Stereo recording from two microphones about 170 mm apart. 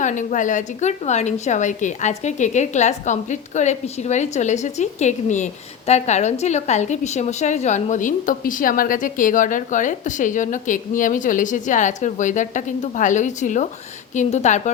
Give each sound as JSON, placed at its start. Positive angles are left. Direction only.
{"t": 0.0, "sound": "a woman's voice", "side_deg": 45}